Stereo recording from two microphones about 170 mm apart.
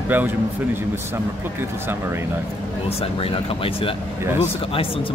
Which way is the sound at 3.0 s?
35° left (ahead or behind).